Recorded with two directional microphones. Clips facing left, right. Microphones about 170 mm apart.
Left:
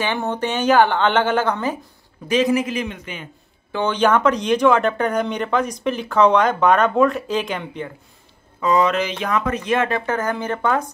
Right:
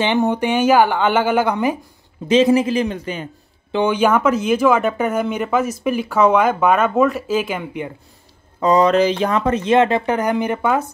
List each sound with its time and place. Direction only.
0.0 s speech: 20° right (ahead or behind)
2.2 s a man's voice: 25° right (ahead or behind)
3.7 s speech: 10° right (ahead or behind)
8.5 s speech: 35° right (ahead or behind); by 10.9 s 10° right (ahead or behind)